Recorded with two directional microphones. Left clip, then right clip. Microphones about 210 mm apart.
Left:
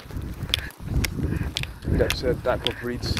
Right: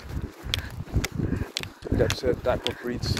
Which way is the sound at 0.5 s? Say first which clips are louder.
Left 2 dB; 55° right (ahead or behind).